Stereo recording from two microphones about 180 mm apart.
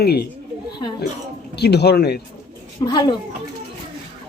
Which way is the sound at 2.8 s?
25° left (ahead or behind).